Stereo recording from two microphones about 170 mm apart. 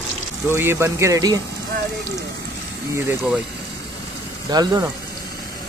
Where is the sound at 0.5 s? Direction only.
15° right (ahead or behind).